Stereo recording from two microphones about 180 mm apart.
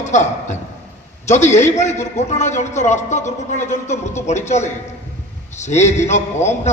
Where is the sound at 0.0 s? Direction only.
40° left (ahead or behind).